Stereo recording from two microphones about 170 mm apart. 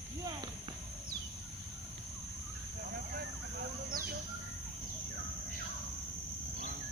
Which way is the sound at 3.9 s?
55° right (ahead or behind).